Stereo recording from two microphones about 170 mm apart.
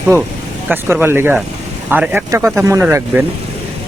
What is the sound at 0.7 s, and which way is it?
Speech, 10° right (ahead or behind).